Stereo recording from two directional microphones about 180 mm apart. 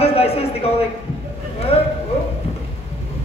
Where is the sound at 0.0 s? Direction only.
35° left (ahead or behind).